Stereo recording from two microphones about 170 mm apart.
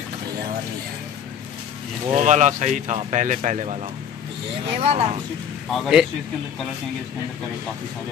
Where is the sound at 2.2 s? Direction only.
45° right (ahead or behind).